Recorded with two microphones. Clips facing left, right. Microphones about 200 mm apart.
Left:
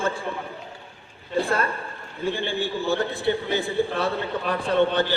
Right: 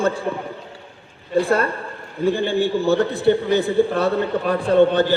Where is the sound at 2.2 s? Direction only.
40° right (ahead or behind).